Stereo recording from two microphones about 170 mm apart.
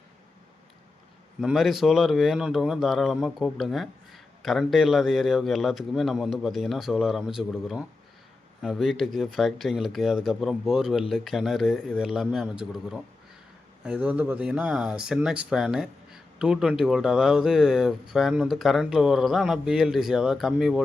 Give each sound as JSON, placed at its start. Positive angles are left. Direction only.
{"t": 1.4, "sound": "speech", "side_deg": 0}